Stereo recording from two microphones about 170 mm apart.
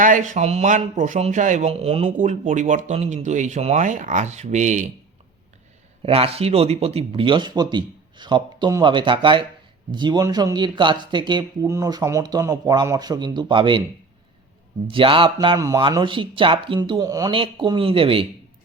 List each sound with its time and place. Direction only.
0.0 s speech: 50° right (ahead or behind)
2.1 s speech: 45° right (ahead or behind)
6.0 s speech: 35° right (ahead or behind)
14.8 s speech: 30° right (ahead or behind)